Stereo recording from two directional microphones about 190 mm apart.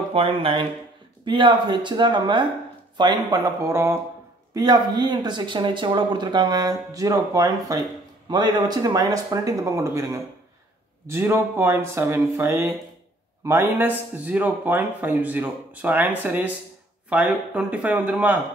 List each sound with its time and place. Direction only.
0.1 s a man's voice: 30° right (ahead or behind); by 18.4 s 10° right (ahead or behind)